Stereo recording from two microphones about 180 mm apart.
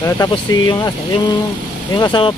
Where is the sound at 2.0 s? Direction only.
25° left (ahead or behind).